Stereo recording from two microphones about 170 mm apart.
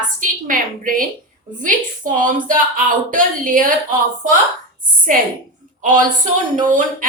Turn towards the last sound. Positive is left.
turn(degrees=-50)  # may be behind; listen again after turning